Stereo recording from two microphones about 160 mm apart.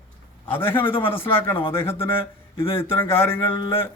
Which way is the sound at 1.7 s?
15° left (ahead or behind).